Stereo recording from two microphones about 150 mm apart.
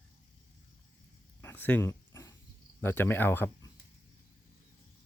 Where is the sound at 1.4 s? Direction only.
15° left (ahead or behind).